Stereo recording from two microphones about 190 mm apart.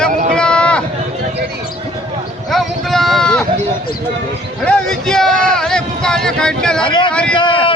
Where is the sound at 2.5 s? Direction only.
Centre (ahead or behind).